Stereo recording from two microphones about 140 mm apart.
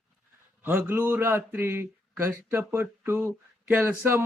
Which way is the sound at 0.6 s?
15° right (ahead or behind).